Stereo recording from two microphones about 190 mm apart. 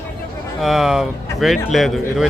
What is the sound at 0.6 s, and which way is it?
Speech, centre (ahead or behind).